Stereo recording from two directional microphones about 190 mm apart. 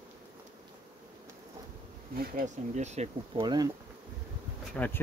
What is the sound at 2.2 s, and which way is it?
Speech, 45° right (ahead or behind).